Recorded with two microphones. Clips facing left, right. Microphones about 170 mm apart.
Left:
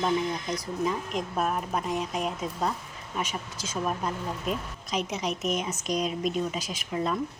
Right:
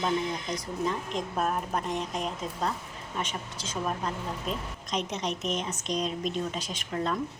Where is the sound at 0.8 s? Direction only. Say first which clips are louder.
Left 1 dB; 5° left (ahead or behind).